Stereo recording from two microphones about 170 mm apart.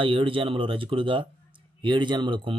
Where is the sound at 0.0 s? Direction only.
30° right (ahead or behind).